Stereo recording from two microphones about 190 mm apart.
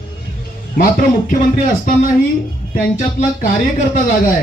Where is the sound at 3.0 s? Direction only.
45° left (ahead or behind).